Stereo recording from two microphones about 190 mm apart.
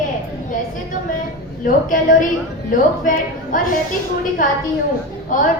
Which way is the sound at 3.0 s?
45° left (ahead or behind).